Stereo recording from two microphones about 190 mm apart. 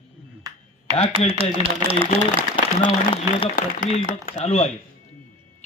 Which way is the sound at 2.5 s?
25° left (ahead or behind).